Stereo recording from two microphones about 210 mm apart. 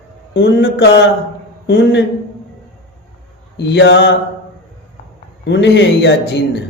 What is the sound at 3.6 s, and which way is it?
Speech, 55° left (ahead or behind).